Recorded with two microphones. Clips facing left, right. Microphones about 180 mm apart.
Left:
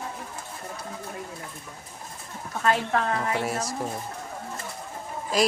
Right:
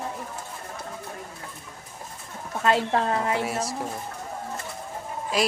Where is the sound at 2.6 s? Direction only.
25° right (ahead or behind).